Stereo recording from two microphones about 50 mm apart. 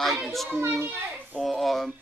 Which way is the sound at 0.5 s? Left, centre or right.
Right.